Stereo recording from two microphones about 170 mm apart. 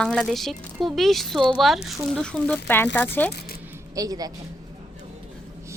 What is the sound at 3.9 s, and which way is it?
Speech, 20° right (ahead or behind).